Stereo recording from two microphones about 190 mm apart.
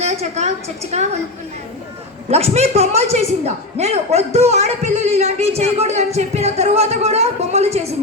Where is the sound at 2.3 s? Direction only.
35° right (ahead or behind).